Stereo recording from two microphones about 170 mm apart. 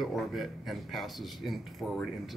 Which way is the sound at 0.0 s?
Centre (ahead or behind).